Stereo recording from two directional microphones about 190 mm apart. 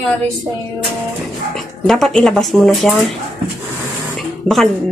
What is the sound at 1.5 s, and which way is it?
Speech, centre (ahead or behind).